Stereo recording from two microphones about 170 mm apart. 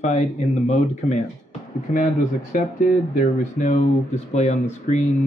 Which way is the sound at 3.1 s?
45° left (ahead or behind).